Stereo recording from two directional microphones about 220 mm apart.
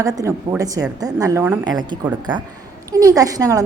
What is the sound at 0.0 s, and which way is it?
A woman's voice, 15° right (ahead or behind).